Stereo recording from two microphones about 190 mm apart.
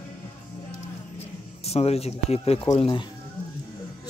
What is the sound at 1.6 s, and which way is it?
Speech, 35° left (ahead or behind).